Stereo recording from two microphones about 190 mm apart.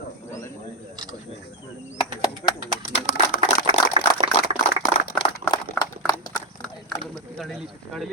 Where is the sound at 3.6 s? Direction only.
30° right (ahead or behind).